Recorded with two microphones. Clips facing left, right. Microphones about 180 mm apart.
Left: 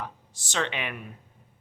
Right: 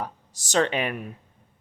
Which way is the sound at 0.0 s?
40° right (ahead or behind).